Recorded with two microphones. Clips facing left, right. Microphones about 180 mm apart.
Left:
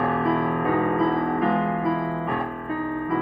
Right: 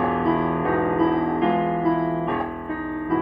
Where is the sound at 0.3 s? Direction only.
Centre (ahead or behind).